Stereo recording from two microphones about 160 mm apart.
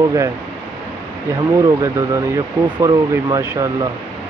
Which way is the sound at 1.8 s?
20° right (ahead or behind).